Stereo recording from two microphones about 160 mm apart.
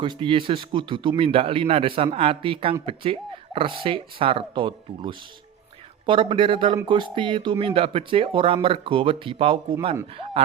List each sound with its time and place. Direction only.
0.0 s speech: 30° right (ahead or behind)